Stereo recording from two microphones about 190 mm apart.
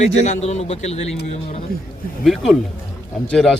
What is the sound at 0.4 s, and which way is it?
Speech, 35° left (ahead or behind).